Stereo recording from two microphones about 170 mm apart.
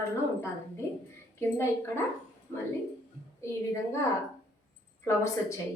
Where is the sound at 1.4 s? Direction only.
15° left (ahead or behind).